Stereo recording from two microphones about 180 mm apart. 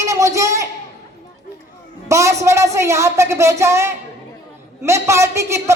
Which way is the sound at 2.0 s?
15° right (ahead or behind).